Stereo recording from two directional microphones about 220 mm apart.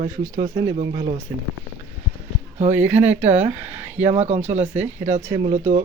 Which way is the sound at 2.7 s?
10° right (ahead or behind).